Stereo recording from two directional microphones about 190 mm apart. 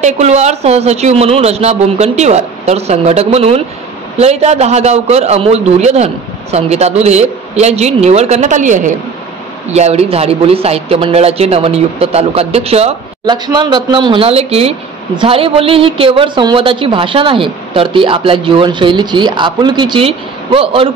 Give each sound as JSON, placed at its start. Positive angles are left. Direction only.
{"t": 0.0, "sound": "speech", "side_deg": -35}
{"t": 13.2, "sound": "speech", "side_deg": -20}